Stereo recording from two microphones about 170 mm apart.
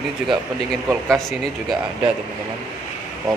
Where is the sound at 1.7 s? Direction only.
30° right (ahead or behind).